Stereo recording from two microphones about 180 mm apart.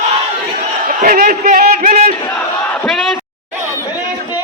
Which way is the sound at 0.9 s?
50° right (ahead or behind).